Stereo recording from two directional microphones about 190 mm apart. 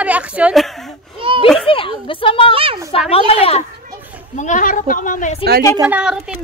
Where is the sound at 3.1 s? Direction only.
30° left (ahead or behind).